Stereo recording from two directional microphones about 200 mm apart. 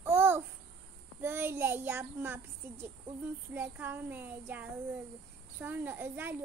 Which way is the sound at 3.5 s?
10° right (ahead or behind).